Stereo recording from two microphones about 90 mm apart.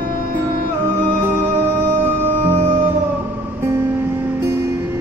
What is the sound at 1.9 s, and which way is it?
Music, 25° right (ahead or behind).